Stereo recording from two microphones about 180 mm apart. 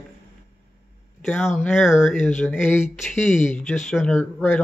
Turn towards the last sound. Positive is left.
turn(degrees=5)  # may be behind; listen again after turning